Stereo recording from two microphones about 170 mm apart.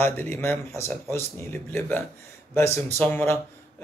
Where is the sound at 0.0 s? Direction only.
15° left (ahead or behind).